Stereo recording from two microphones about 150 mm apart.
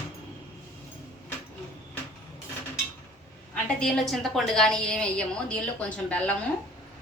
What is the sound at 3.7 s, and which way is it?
A woman's voice, 5° left (ahead or behind).